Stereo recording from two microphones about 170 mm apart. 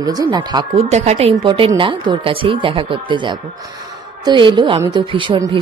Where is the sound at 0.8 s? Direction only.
40° right (ahead or behind).